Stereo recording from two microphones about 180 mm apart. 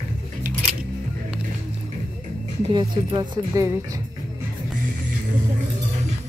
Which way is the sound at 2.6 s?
25° right (ahead or behind).